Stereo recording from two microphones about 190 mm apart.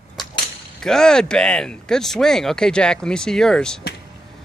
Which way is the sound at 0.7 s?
5° left (ahead or behind).